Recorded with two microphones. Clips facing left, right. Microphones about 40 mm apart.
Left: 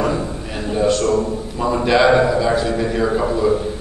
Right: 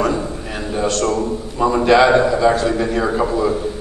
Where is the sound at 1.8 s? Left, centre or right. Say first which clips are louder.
Right 1 dB; centre.